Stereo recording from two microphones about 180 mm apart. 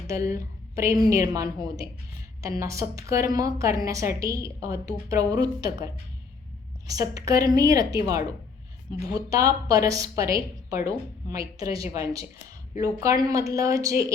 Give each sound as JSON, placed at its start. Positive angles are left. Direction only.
{"t": 0.1, "sound": "a woman's voice", "side_deg": -15}